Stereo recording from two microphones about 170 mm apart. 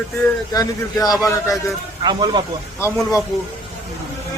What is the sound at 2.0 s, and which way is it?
Speech, 25° right (ahead or behind).